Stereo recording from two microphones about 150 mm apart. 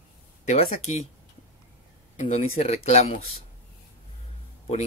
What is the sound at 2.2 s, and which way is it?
Speech, 45° left (ahead or behind).